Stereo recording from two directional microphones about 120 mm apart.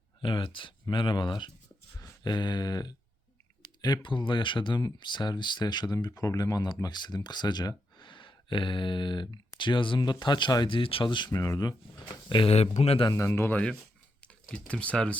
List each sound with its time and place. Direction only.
0.2 s speech: 45° left (ahead or behind)
11.3 s a man's voice: 25° left (ahead or behind)
12.3 s speech: 50° left (ahead or behind)
13.1 s a man's voice: 25° left (ahead or behind)
14.5 s speech: 10° left (ahead or behind)